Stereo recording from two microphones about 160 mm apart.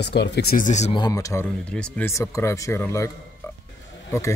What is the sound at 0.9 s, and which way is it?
Speech, 25° left (ahead or behind).